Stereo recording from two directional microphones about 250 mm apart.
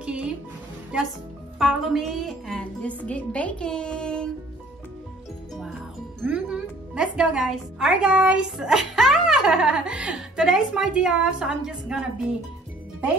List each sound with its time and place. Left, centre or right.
0.0 s music: centre
1.6 s a woman's voice: centre
6.2 s a woman's voice: centre